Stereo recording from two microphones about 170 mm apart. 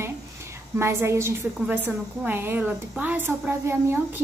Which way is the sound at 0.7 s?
15° right (ahead or behind).